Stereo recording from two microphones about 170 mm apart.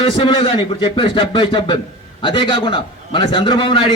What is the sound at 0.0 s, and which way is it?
A man's voice, 25° left (ahead or behind).